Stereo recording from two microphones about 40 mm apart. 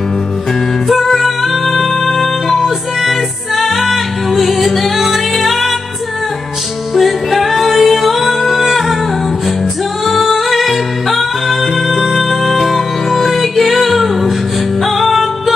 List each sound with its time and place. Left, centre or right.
0.8 s music: centre
7.0 s music: centre
10.2 s music: centre